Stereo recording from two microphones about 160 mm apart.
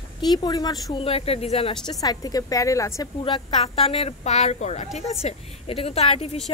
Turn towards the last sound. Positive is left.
turn(degrees=40)  # may be behind; listen again after turning